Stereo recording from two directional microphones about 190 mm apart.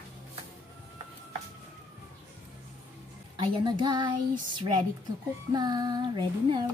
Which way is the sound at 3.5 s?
25° right (ahead or behind).